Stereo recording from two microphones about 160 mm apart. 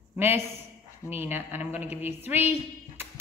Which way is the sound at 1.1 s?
15° right (ahead or behind).